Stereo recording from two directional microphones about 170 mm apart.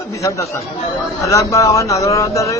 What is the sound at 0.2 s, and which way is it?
A man's voice, 20° left (ahead or behind).